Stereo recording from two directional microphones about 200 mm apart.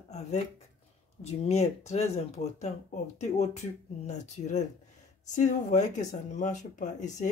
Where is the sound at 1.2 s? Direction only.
35° left (ahead or behind).